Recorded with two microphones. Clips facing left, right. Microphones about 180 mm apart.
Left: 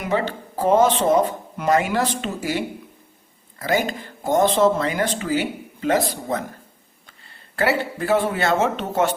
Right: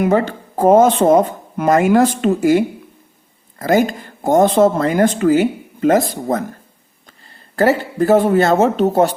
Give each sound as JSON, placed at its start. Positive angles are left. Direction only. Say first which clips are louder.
{"t": 0.0, "sound": "speech", "louder": "right 8 dB", "side_deg": -45}
{"t": 7.5, "sound": "speech", "louder": "right 6 dB", "side_deg": -40}